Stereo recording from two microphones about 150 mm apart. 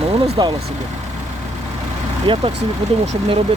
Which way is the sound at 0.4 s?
30° right (ahead or behind).